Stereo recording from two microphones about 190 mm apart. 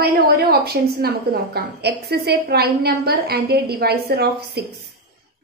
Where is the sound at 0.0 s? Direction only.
55° right (ahead or behind).